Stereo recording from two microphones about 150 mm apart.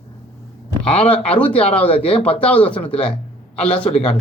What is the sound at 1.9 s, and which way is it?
Speech, 40° left (ahead or behind).